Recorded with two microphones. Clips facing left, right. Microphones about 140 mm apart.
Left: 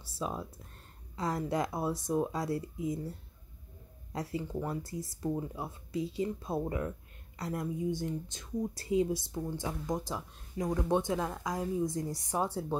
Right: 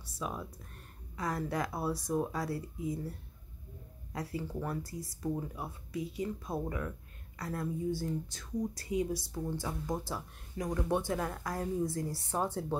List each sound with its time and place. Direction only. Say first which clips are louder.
0.0 s a woman's voice: left 2 dB; 25° left (ahead or behind)